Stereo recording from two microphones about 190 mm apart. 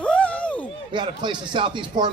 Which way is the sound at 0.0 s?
5° left (ahead or behind).